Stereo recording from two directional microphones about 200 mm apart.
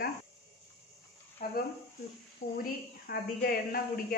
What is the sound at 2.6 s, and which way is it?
Speech, 45° left (ahead or behind).